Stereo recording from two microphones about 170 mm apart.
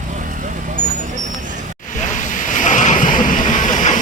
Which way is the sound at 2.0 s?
50° left (ahead or behind).